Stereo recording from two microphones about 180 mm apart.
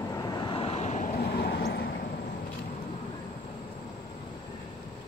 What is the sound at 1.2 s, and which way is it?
Vehicle, 60° left (ahead or behind).